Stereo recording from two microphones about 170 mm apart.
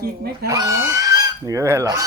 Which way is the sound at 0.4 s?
20° right (ahead or behind).